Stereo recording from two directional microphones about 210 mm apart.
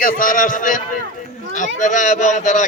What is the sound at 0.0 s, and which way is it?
A man's voice, 40° left (ahead or behind).